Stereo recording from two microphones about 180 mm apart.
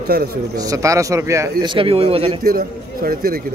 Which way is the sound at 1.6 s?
30° right (ahead or behind).